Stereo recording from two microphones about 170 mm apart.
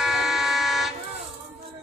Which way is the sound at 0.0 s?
Centre (ahead or behind).